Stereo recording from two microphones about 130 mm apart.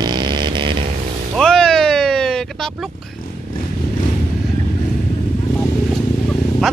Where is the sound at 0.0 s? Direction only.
35° right (ahead or behind).